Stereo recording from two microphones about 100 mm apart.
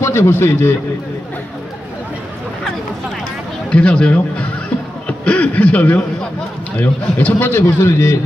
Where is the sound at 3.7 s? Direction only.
10° left (ahead or behind).